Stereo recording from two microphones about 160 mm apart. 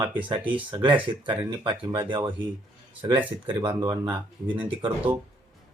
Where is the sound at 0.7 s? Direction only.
30° right (ahead or behind).